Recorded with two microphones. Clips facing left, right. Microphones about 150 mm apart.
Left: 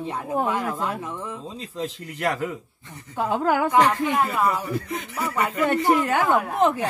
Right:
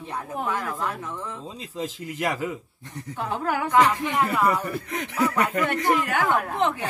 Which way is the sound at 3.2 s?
35° left (ahead or behind).